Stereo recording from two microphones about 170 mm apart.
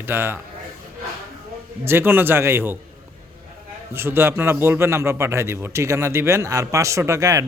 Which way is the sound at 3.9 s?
15° right (ahead or behind).